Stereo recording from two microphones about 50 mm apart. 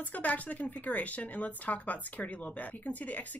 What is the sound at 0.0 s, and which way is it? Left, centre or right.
Speech, left.